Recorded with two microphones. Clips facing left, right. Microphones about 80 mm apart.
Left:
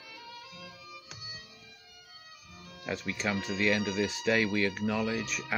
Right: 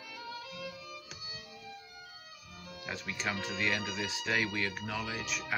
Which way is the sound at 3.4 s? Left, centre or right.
Centre.